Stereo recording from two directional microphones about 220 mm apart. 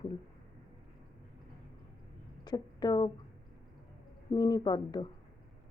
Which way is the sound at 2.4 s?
20° left (ahead or behind).